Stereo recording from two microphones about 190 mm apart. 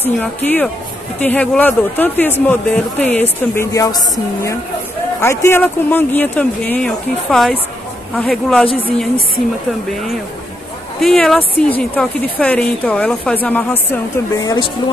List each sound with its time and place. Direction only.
0.0 s a woman's voice: 10° left (ahead or behind)
11.0 s speech: centre (ahead or behind)
14.1 s speech: 20° left (ahead or behind)